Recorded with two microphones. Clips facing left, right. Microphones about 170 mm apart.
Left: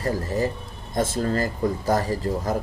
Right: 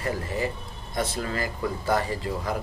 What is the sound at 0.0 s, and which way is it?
Speech, 40° left (ahead or behind).